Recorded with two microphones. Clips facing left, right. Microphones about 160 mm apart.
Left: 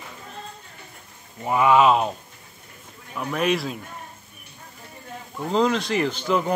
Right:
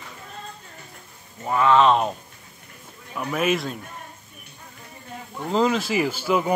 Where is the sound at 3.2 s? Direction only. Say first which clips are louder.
Even; 5° right (ahead or behind).